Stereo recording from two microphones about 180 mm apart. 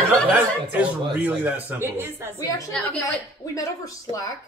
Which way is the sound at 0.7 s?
10° right (ahead or behind).